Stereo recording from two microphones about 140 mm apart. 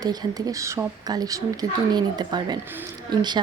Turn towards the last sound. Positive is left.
turn(degrees=-30)  # may be behind; listen again after turning